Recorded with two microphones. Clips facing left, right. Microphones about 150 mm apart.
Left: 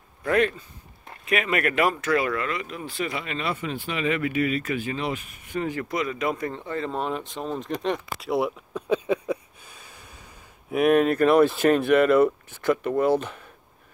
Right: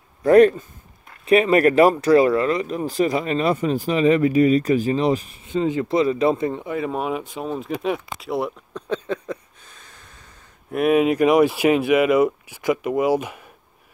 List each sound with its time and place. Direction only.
0.2 s speech: 35° right (ahead or behind); by 10.0 s 10° left (ahead or behind)
10.7 s speech: centre (ahead or behind)